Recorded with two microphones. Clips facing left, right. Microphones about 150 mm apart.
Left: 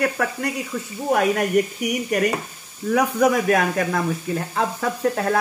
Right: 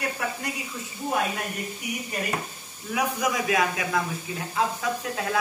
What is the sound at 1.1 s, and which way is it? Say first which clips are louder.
Speech: left 9 dB; 75° left (ahead or behind).